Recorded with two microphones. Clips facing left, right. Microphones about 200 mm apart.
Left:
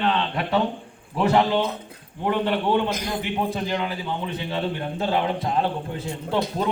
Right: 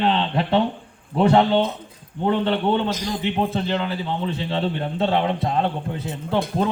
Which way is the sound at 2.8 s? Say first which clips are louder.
Right 2 dB; 60° left (ahead or behind).